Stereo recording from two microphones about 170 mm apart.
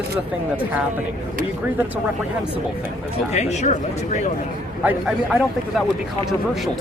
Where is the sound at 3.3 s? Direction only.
40° left (ahead or behind).